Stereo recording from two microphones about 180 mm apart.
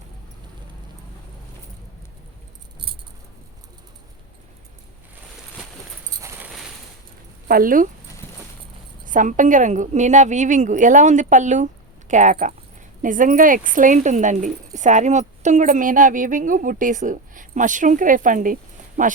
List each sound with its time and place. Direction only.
7.4 s speech: 50° right (ahead or behind)
9.0 s speech: 45° right (ahead or behind)